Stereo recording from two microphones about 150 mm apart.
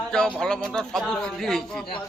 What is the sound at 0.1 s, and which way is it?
A man's voice, 5° left (ahead or behind).